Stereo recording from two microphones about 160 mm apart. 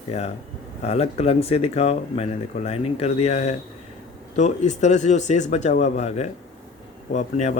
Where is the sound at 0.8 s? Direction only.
40° left (ahead or behind).